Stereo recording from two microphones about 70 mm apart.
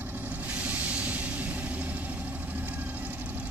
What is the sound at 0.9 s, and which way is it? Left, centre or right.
Vehicle, right.